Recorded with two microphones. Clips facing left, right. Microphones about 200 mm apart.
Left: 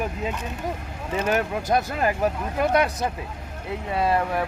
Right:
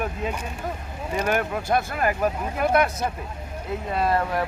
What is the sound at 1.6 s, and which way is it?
Speech, 20° left (ahead or behind).